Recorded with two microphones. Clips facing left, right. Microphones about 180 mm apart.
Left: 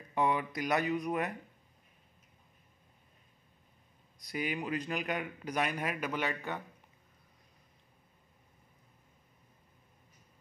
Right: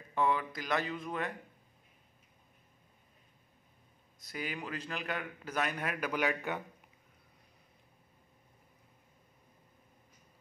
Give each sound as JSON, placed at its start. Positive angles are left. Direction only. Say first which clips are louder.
{"t": 0.1, "sound": "a man's voice", "louder": "left 1 dB", "side_deg": 15}
{"t": 4.2, "sound": "a man's voice", "louder": "left 4 dB", "side_deg": 15}
{"t": 6.1, "sound": "a man's voice", "louder": "right 2 dB", "side_deg": -5}